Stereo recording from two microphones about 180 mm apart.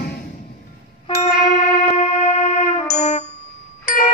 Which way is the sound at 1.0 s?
40° left (ahead or behind).